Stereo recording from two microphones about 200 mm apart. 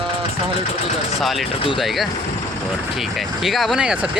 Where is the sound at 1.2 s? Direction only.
Centre (ahead or behind).